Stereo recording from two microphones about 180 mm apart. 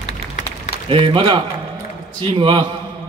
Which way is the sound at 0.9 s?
30° right (ahead or behind).